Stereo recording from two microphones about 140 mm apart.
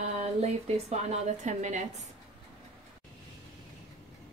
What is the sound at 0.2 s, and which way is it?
A woman's voice, 50° right (ahead or behind).